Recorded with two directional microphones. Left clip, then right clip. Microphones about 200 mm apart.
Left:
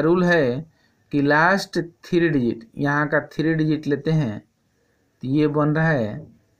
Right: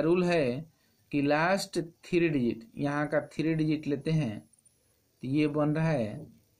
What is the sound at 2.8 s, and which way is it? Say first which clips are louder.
Speech: left 10 dB; 5° left (ahead or behind).